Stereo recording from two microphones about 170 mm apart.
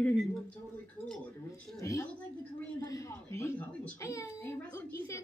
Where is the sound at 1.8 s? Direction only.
20° left (ahead or behind).